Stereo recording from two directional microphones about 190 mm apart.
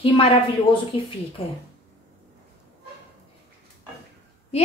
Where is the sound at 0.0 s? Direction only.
30° left (ahead or behind).